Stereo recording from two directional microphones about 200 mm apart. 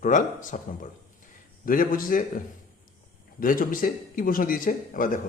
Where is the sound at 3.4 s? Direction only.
45° left (ahead or behind).